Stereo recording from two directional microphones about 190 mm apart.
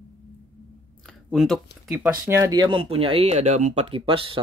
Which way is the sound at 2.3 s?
20° right (ahead or behind).